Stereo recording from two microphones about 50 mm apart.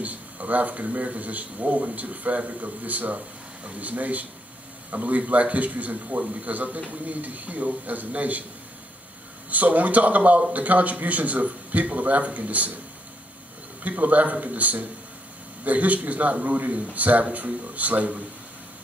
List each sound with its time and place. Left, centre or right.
0.0 s a man's voice: right
9.5 s a man's voice: right
13.8 s a man's voice: right